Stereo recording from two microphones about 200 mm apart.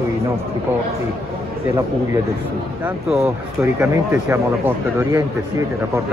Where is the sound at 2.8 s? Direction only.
10° right (ahead or behind).